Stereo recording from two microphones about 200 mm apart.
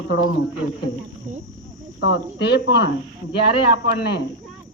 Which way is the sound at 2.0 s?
55° left (ahead or behind).